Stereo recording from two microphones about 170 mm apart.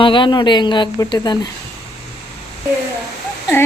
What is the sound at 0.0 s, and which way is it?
Speech, 30° left (ahead or behind).